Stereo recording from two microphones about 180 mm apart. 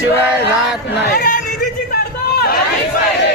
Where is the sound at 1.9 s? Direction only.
60° left (ahead or behind).